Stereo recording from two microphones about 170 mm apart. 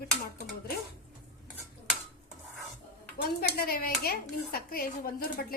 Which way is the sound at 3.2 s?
60° left (ahead or behind).